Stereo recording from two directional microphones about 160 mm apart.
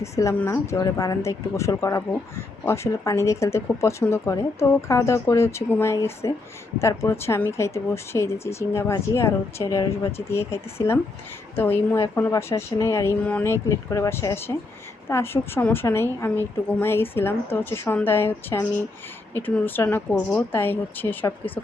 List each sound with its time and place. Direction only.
0.0 s speech: 20° left (ahead or behind)